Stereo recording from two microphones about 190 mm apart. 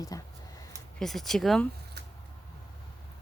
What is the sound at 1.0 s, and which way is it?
Speech, centre (ahead or behind).